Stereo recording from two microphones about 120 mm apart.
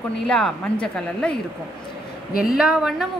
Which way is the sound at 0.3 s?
5° left (ahead or behind).